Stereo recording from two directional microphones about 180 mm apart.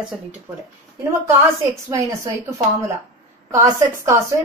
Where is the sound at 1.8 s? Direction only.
15° right (ahead or behind).